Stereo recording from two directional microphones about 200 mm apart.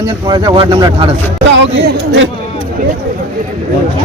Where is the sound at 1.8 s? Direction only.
65° right (ahead or behind).